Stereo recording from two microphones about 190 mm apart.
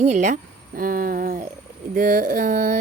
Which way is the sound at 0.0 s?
40° right (ahead or behind).